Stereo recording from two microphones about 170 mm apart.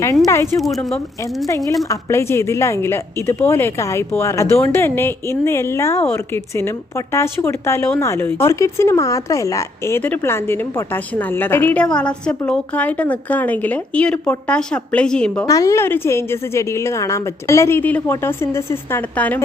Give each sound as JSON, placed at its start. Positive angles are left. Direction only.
{"t": 0.6, "sound": "a woman's voice", "side_deg": 0}
{"t": 1.5, "sound": "a woman's voice", "side_deg": 20}
{"t": 15.4, "sound": "a woman's voice", "side_deg": 20}